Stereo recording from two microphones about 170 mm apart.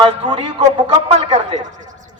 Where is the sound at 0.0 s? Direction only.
30° right (ahead or behind).